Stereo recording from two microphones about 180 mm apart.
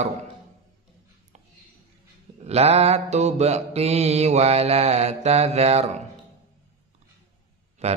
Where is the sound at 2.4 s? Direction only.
35° right (ahead or behind).